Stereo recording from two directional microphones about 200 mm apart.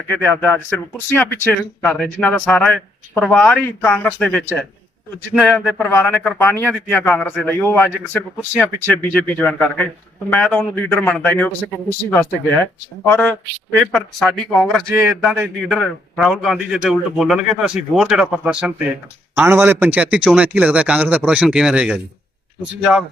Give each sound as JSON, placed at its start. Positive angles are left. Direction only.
{"t": 0.2, "sound": "a man's voice", "side_deg": 5}